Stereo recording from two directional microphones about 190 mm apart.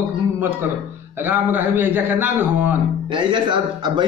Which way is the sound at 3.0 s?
25° right (ahead or behind).